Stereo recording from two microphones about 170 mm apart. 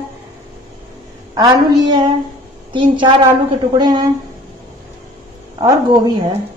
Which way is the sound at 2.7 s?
30° right (ahead or behind).